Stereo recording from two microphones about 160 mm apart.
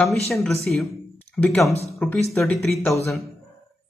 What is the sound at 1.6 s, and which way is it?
Speech, 40° left (ahead or behind).